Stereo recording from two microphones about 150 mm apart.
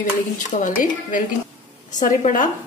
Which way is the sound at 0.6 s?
65° left (ahead or behind).